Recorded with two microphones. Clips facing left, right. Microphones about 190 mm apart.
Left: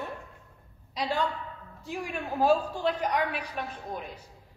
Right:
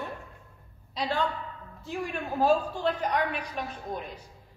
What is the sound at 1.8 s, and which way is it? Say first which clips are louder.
A woman's voice: right 1 dB; 10° left (ahead or behind).